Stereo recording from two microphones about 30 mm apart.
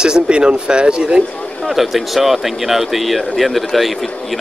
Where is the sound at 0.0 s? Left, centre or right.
Right.